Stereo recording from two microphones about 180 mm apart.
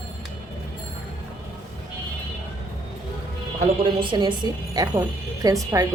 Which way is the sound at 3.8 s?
25° right (ahead or behind).